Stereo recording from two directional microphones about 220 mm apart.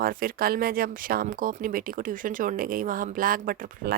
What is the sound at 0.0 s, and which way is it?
Speech, 40° right (ahead or behind).